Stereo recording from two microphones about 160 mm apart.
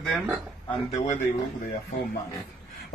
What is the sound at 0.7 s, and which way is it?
Speech, 45° left (ahead or behind).